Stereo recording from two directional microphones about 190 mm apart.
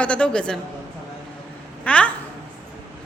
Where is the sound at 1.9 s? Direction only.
5° left (ahead or behind).